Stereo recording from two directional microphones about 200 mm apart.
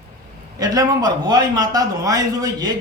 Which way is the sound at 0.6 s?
20° right (ahead or behind).